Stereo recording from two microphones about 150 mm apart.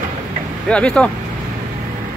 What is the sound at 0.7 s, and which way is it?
Speech, 5° left (ahead or behind).